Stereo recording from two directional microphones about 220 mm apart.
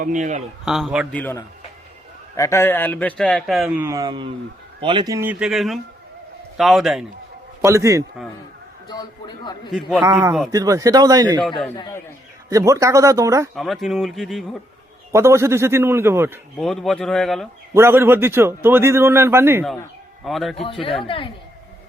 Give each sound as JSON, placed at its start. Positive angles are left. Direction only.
{"t": 0.0, "sound": "a man's voice", "side_deg": -35}
{"t": 0.6, "sound": "a man's voice", "side_deg": 0}
{"t": 1.2, "sound": "a man's voice", "side_deg": 10}
{"t": 7.6, "sound": "a man's voice", "side_deg": -15}
{"t": 8.9, "sound": "a man's voice", "side_deg": 20}
{"t": 10.0, "sound": "a man's voice", "side_deg": -15}
{"t": 12.5, "sound": "a man's voice", "side_deg": -15}
{"t": 13.6, "sound": "a man's voice", "side_deg": 0}
{"t": 15.1, "sound": "a man's voice", "side_deg": -10}
{"t": 16.6, "sound": "a man's voice", "side_deg": 0}
{"t": 17.7, "sound": "a man's voice", "side_deg": -10}
{"t": 20.2, "sound": "a man's voice", "side_deg": 0}
{"t": 21.0, "sound": "a man's voice", "side_deg": 25}